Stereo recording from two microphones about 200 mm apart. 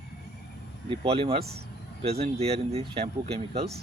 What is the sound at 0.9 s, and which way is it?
Speech, 25° right (ahead or behind).